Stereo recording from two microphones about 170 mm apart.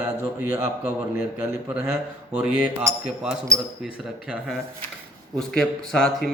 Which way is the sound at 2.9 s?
20° right (ahead or behind).